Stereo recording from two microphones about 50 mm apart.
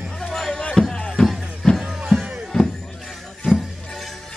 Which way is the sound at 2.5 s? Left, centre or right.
Centre.